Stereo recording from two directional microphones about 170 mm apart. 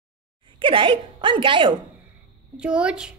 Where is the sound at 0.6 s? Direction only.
30° right (ahead or behind).